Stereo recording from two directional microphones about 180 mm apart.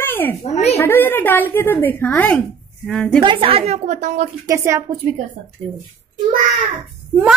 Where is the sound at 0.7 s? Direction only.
10° left (ahead or behind).